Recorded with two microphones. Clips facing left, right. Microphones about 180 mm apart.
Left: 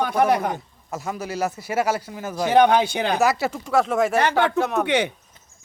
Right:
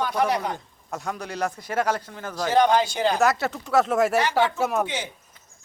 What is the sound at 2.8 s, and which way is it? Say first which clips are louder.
Speech: even; 65° left (ahead or behind).